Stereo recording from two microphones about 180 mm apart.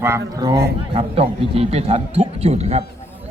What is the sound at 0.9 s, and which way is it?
A man's voice, 35° right (ahead or behind).